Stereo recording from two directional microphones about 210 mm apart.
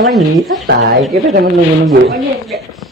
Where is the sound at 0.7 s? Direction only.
50° right (ahead or behind).